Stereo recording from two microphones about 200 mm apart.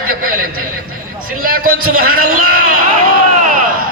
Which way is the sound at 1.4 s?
45° right (ahead or behind).